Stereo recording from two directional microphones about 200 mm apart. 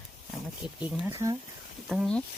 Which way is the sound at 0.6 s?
5° right (ahead or behind).